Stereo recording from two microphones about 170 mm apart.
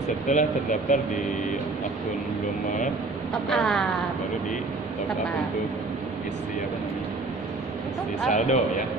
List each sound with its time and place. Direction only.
0.3 s speech: 50° left (ahead or behind)
3.4 s speech: centre (ahead or behind)
8.3 s speech: 45° left (ahead or behind)